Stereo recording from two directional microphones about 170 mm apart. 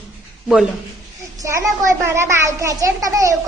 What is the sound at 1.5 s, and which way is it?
A child's voice, 15° right (ahead or behind).